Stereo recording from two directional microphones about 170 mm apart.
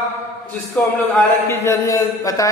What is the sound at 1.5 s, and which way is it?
A man's voice, 15° left (ahead or behind).